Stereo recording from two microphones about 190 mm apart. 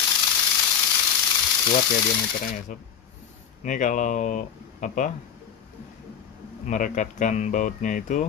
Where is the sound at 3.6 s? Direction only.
40° left (ahead or behind).